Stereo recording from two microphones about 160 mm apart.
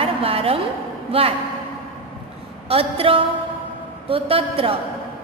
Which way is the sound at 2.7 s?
35° right (ahead or behind).